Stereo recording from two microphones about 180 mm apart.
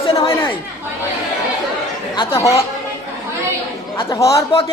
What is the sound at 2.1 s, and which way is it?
Chatter, 20° left (ahead or behind).